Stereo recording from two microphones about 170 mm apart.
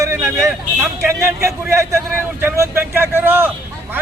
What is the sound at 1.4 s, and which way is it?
A man's voice, 15° right (ahead or behind).